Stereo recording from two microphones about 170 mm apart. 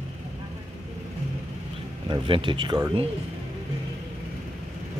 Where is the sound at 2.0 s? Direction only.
30° right (ahead or behind).